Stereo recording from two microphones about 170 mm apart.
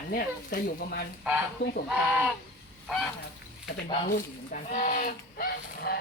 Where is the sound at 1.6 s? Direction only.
60° left (ahead or behind).